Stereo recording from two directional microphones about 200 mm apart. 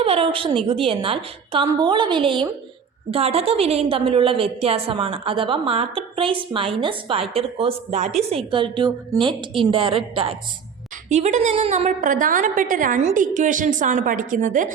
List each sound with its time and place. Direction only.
0.0 s a woman's voice: 30° right (ahead or behind)